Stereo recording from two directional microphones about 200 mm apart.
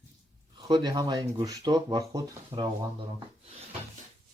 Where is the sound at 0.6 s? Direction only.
20° right (ahead or behind).